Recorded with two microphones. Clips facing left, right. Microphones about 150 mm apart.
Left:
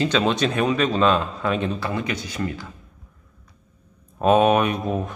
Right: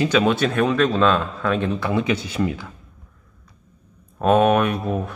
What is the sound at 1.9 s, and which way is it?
Speech, 25° right (ahead or behind).